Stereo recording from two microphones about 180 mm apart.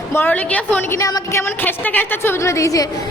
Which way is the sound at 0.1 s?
10° left (ahead or behind).